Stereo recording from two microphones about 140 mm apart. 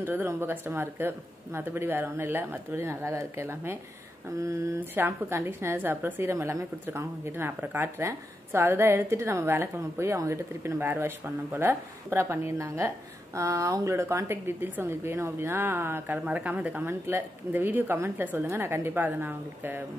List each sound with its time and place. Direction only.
0.0 s a woman's voice: 15° right (ahead or behind)